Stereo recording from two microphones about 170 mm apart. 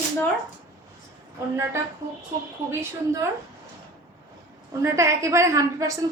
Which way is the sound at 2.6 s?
15° right (ahead or behind).